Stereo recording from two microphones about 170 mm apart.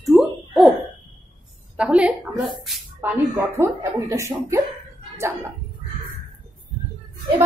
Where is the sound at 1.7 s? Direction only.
5° right (ahead or behind).